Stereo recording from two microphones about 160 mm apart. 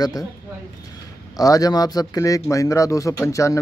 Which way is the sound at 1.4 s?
20° left (ahead or behind).